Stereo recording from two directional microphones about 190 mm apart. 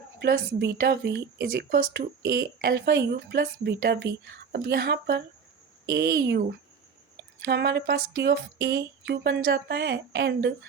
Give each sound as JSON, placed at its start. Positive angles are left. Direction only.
{"t": 0.2, "sound": "speech", "side_deg": -65}
{"t": 7.4, "sound": "speech", "side_deg": -60}